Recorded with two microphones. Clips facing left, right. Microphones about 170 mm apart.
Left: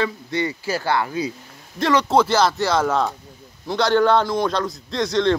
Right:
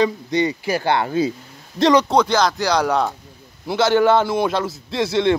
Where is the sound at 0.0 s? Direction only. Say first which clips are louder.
Right 5 dB; 15° right (ahead or behind).